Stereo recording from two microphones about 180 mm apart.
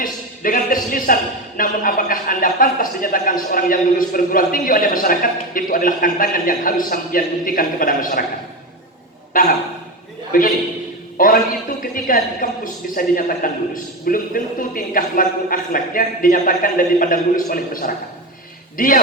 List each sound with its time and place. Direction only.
0.0 s a man's voice: 50° left (ahead or behind)
9.3 s a man's voice: 50° left (ahead or behind)